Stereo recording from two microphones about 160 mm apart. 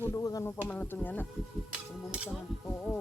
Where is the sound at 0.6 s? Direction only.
10° left (ahead or behind).